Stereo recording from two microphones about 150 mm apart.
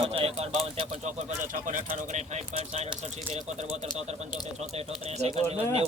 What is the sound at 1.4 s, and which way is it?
Speech, 60° right (ahead or behind).